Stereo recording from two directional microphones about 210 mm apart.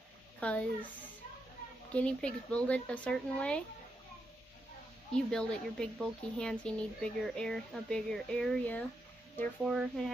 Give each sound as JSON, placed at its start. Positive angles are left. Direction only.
{"t": 0.4, "sound": "speech", "side_deg": 5}
{"t": 2.0, "sound": "speech", "side_deg": 5}
{"t": 5.1, "sound": "speech", "side_deg": 5}